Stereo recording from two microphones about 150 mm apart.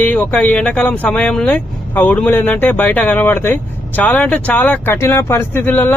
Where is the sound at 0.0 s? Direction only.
10° left (ahead or behind).